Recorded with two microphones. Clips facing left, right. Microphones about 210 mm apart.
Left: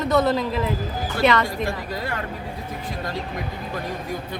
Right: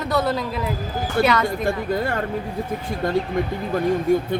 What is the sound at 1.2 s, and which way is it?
Speech, 55° right (ahead or behind).